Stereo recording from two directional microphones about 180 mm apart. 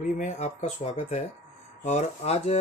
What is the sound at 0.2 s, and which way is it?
Speech, 40° left (ahead or behind).